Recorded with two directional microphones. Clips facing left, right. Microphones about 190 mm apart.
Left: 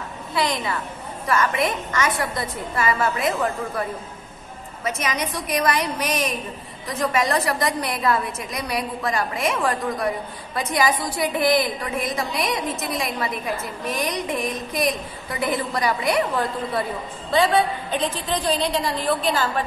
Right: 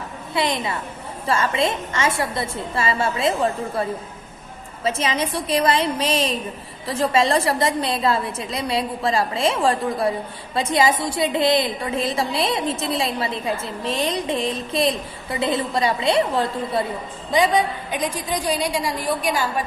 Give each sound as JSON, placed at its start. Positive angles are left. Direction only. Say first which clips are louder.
{"t": 0.3, "sound": "a woman's voice", "louder": "right 1 dB", "side_deg": -25}
{"t": 4.8, "sound": "a woman's voice", "louder": "right 3 dB", "side_deg": -30}
{"t": 17.3, "sound": "a woman's voice", "louder": "even", "side_deg": -15}